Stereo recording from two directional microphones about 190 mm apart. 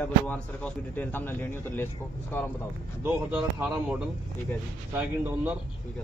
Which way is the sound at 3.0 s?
5° right (ahead or behind).